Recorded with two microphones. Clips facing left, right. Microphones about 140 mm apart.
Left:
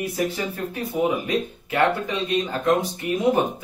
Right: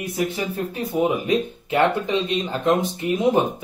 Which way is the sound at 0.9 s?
20° right (ahead or behind).